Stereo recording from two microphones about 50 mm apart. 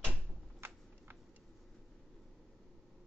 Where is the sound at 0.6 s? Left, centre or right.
Right.